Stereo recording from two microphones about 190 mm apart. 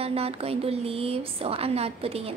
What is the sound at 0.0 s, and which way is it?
A woman's voice, 30° right (ahead or behind).